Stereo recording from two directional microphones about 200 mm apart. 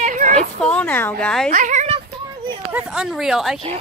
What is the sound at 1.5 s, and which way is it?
Speech, 40° right (ahead or behind).